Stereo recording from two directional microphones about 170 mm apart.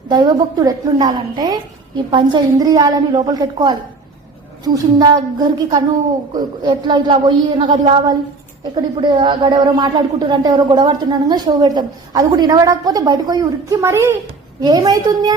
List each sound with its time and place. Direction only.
0.1 s speech: 25° right (ahead or behind)